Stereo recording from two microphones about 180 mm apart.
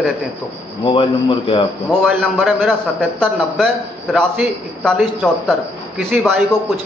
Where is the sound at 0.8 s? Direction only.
30° left (ahead or behind).